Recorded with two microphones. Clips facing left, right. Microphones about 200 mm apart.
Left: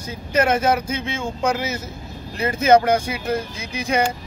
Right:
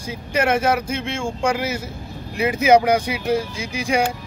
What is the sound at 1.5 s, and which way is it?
Speech, 10° right (ahead or behind).